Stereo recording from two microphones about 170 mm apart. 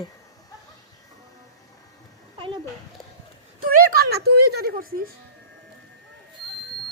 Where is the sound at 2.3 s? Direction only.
30° right (ahead or behind).